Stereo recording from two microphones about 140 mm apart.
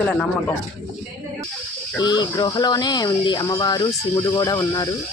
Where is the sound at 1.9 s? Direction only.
30° left (ahead or behind).